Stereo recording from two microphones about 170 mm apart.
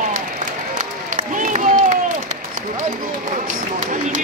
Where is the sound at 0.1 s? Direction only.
50° right (ahead or behind).